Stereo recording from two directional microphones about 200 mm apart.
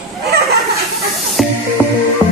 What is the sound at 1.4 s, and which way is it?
Music, centre (ahead or behind).